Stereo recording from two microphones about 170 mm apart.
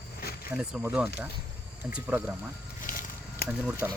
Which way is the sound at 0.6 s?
5° right (ahead or behind).